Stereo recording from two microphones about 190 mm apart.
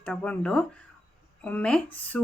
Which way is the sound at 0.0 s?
5° left (ahead or behind).